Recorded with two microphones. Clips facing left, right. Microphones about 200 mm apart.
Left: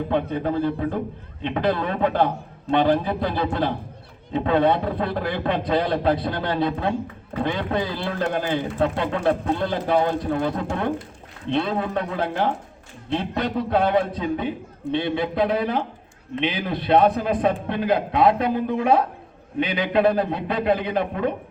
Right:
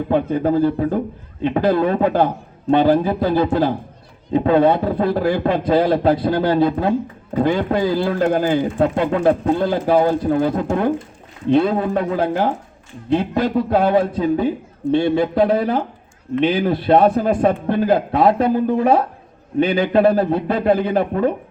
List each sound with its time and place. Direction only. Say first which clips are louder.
0.1 s a man's voice: right 8 dB; 40° right (ahead or behind)